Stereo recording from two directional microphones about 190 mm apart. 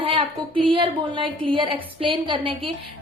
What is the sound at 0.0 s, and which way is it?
A woman's voice, 25° right (ahead or behind).